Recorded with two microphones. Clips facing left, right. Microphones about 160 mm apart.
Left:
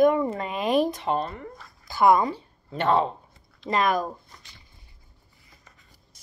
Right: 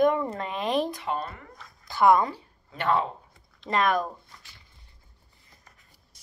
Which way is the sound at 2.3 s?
25° left (ahead or behind).